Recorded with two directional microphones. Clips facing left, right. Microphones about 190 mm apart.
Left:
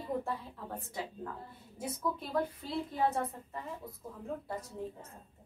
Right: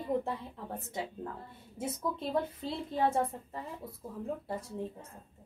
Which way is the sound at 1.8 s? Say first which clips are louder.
Right 1 dB; 25° right (ahead or behind).